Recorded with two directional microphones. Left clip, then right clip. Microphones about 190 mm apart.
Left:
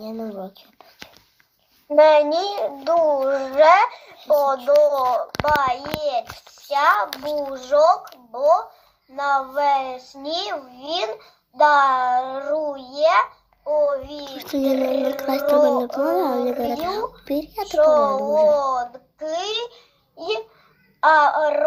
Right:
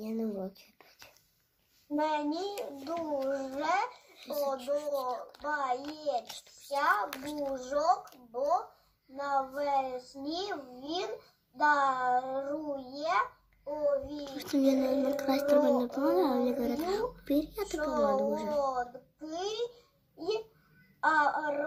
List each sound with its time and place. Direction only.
0.2 s whispering: 15° left (ahead or behind)
2.0 s a child's voice: 35° left (ahead or behind)
7.2 s a child's voice: 10° right (ahead or behind)
7.5 s a child's voice: 25° left (ahead or behind)
11.5 s a child's voice: 25° left (ahead or behind)
14.3 s a child's voice: 15° right (ahead or behind)
17.7 s a child's voice: 35° left (ahead or behind)
18.5 s a child's voice: 30° left (ahead or behind)
21.0 s a child's voice: 25° left (ahead or behind)